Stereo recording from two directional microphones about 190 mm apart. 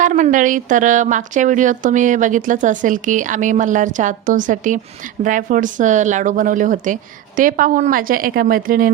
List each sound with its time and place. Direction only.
0.0 s a woman's voice: 40° right (ahead or behind)